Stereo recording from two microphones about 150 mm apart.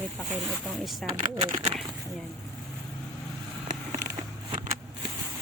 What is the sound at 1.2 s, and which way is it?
Speech, 30° right (ahead or behind).